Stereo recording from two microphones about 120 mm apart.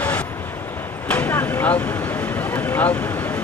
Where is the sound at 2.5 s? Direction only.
15° left (ahead or behind).